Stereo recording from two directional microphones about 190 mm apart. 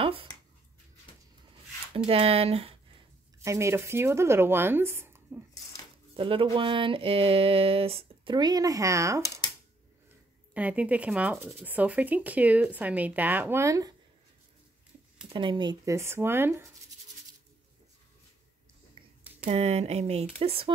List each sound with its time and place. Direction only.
0.0 s a sound: 30° right (ahead or behind)
2.0 s speech: 30° right (ahead or behind)
3.4 s speech: 15° right (ahead or behind)
6.1 s speech: 30° right (ahead or behind)
10.5 s speech: 5° right (ahead or behind)
15.3 s speech: 25° right (ahead or behind)
19.5 s speech: 35° right (ahead or behind)